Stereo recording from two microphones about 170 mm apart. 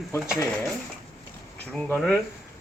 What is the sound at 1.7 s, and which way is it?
Speech, 5° left (ahead or behind).